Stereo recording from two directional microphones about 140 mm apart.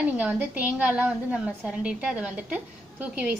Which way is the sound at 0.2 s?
10° right (ahead or behind).